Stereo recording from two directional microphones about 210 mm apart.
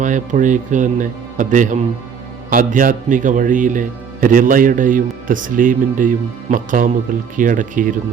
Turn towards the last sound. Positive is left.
turn(degrees=-40)  # may be behind; listen again after turning